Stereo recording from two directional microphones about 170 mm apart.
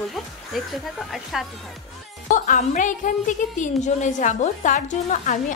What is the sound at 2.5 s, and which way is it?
A woman's voice, 45° left (ahead or behind).